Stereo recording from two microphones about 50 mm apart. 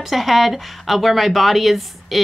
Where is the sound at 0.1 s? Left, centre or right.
Centre.